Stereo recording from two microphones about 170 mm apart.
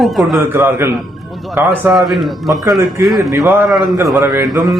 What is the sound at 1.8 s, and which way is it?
A man's voice, centre (ahead or behind).